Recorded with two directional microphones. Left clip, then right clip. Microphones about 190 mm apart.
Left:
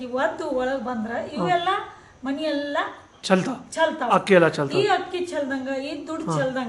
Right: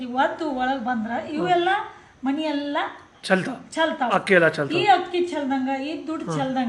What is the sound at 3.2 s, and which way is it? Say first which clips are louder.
A woman's voice: even; 15° left (ahead or behind).